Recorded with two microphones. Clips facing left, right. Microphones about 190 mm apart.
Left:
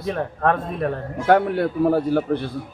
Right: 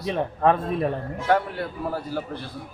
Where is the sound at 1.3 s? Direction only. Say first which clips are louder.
Left 6 dB; 55° left (ahead or behind).